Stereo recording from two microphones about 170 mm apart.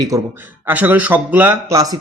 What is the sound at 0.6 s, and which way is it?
A man's voice, 10° right (ahead or behind).